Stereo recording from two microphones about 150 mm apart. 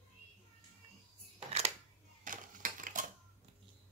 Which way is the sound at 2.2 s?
60° right (ahead or behind).